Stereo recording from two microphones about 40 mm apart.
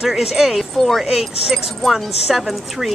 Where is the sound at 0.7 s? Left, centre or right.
Centre.